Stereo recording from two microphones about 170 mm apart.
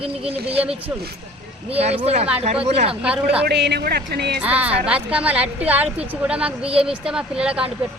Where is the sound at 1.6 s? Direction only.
35° right (ahead or behind).